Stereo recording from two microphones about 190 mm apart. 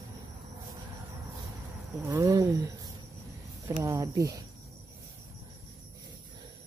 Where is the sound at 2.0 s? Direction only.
15° right (ahead or behind).